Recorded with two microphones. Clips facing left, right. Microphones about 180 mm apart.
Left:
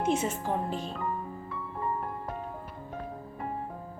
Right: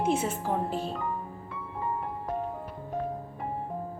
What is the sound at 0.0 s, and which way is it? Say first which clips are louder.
Speech: right 1 dB; 10° right (ahead or behind).